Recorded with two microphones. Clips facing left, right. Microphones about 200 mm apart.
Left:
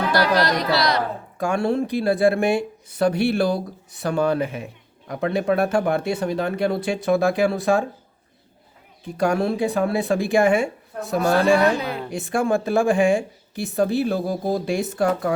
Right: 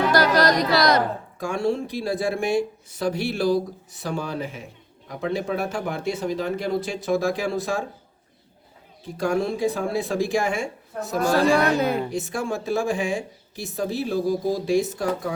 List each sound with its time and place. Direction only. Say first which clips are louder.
0.1 s music: right 1 dB; 45° right (ahead or behind)
1.4 s speech: left 3 dB; 60° left (ahead or behind)
9.1 s speech: left 3 dB; 65° left (ahead or behind)